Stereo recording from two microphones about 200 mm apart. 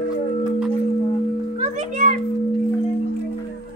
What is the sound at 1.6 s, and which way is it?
Music, 35° right (ahead or behind).